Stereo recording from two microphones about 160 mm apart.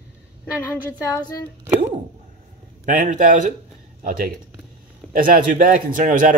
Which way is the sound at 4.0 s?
60° right (ahead or behind).